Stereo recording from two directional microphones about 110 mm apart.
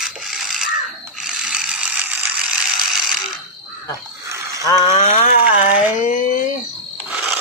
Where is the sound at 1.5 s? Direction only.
10° right (ahead or behind).